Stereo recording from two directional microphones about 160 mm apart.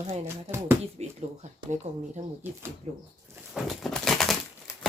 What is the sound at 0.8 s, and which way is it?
A woman's voice, 40° right (ahead or behind).